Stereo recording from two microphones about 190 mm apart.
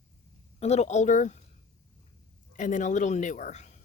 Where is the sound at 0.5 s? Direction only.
35° left (ahead or behind).